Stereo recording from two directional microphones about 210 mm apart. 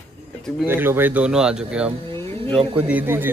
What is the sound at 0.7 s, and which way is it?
Speech, 10° right (ahead or behind).